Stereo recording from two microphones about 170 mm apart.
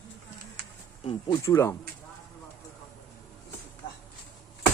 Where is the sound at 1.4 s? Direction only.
15° left (ahead or behind).